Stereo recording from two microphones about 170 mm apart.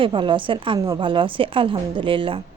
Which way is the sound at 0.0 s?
30° right (ahead or behind).